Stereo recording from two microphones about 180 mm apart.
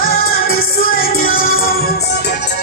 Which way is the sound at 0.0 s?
55° left (ahead or behind).